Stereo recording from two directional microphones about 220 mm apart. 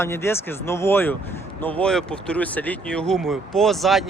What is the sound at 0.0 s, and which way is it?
Speech, 10° left (ahead or behind).